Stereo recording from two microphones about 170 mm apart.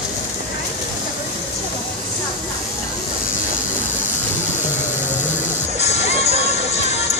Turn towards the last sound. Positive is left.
turn(degrees=40)  # may be behind; listen again after turning